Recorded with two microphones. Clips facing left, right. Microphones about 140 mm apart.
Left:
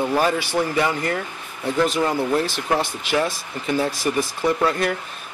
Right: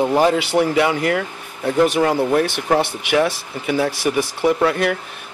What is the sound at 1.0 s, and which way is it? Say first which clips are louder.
Speech: right 5 dB; 75° right (ahead or behind).